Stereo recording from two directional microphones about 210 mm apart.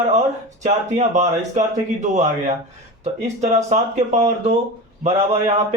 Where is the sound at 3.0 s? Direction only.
35° right (ahead or behind).